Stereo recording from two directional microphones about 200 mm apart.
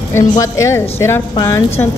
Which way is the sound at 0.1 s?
15° left (ahead or behind).